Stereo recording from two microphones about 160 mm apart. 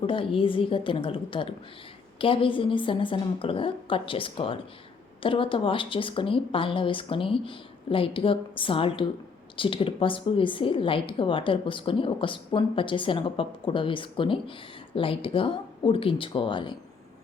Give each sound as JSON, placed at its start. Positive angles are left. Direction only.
{"t": 0.0, "sound": "a woman's voice", "side_deg": 35}